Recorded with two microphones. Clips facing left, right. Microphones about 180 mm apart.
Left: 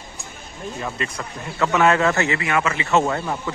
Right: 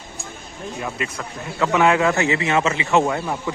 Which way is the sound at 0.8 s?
5° right (ahead or behind).